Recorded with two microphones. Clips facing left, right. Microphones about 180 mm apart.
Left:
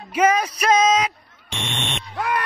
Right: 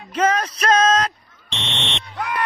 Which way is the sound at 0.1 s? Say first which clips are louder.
Left 1 dB; 10° left (ahead or behind).